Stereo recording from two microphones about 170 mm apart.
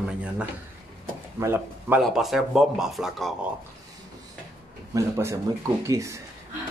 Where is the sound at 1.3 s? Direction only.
15° right (ahead or behind).